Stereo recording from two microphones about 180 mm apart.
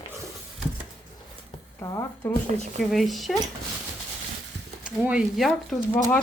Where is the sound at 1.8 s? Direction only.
15° left (ahead or behind).